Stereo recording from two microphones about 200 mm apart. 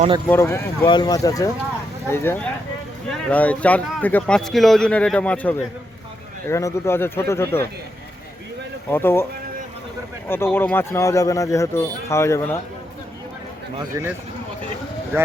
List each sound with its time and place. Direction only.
0.3 s a man's voice: 15° left (ahead or behind)
8.9 s speech: 10° left (ahead or behind)
10.2 s speech: 10° left (ahead or behind)
15.1 s speech: 10° right (ahead or behind)